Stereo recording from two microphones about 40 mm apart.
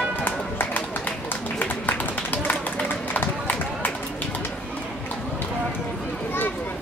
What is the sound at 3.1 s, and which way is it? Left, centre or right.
Run, left.